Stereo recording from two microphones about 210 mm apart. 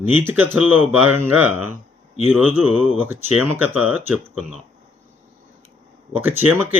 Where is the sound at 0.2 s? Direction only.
10° right (ahead or behind).